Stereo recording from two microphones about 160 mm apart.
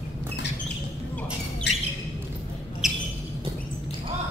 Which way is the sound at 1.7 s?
90° left.